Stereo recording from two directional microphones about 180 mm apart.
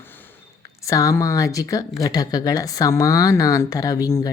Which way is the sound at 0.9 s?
15° left (ahead or behind).